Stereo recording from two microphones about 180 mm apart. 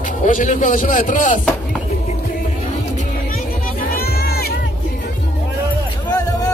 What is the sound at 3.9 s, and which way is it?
Crowd, 60° left (ahead or behind).